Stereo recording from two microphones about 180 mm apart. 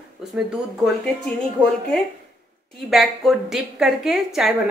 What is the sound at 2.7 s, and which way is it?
A woman's voice, centre (ahead or behind).